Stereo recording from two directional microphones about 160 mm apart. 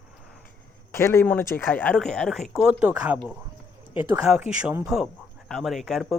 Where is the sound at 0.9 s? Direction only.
15° left (ahead or behind); by 3.2 s 5° right (ahead or behind).